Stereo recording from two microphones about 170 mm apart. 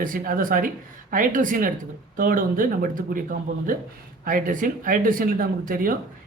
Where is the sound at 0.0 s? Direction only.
55° right (ahead or behind).